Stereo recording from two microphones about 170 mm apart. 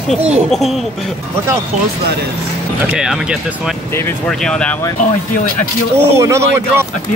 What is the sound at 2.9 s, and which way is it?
Speech, 5° right (ahead or behind).